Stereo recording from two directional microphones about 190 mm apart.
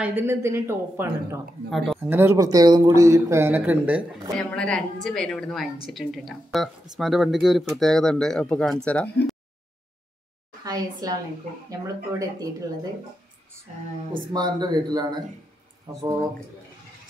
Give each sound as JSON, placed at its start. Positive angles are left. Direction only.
{"t": 0.0, "sound": "speech", "side_deg": -10}
{"t": 1.7, "sound": "speech", "side_deg": 0}
{"t": 2.0, "sound": "speech", "side_deg": -10}
{"t": 4.4, "sound": "speech", "side_deg": 5}
{"t": 10.6, "sound": "speech", "side_deg": -20}
{"t": 12.2, "sound": "speech", "side_deg": -20}
{"t": 14.1, "sound": "speech", "side_deg": -20}